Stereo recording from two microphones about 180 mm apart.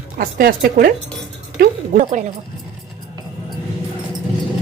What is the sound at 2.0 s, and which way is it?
Speech, 40° right (ahead or behind).